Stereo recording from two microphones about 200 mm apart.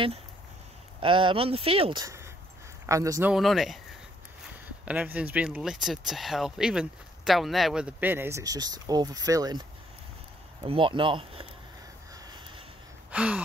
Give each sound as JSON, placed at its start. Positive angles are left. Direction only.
{"t": 1.0, "sound": "speech", "side_deg": -25}
{"t": 3.3, "sound": "speech", "side_deg": 0}
{"t": 4.8, "sound": "speech", "side_deg": -5}
{"t": 12.1, "sound": "a sound", "side_deg": -25}
{"t": 13.1, "sound": "gasp", "side_deg": -5}